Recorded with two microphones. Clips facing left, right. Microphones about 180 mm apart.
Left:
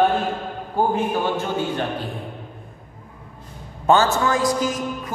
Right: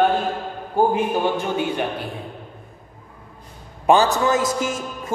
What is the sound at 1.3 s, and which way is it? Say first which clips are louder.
Speech: right 1 dB; 15° right (ahead or behind).